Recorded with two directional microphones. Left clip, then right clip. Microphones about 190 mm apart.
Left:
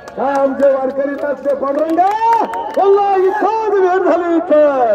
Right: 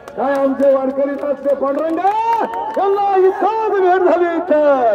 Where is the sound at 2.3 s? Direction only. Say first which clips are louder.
Left 3 dB; 40° right (ahead or behind).